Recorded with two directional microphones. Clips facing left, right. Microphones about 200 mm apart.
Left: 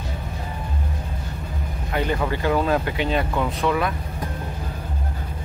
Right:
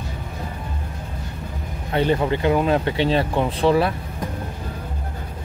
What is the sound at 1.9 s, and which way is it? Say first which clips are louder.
Speech: right 4 dB; 30° right (ahead or behind).